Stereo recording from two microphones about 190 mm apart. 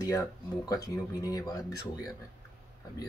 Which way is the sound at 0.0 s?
15° left (ahead or behind).